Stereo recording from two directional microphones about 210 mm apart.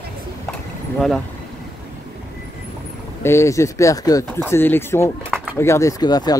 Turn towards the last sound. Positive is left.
turn(degrees=20)  # may be behind; listen again after turning